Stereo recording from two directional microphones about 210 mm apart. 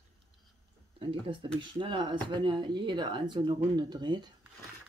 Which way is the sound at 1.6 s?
20° right (ahead or behind).